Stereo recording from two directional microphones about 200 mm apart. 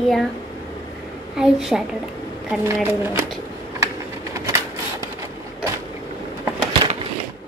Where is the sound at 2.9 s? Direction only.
10° right (ahead or behind).